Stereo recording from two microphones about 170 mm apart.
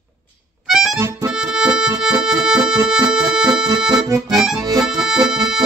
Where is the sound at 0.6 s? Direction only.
5° right (ahead or behind).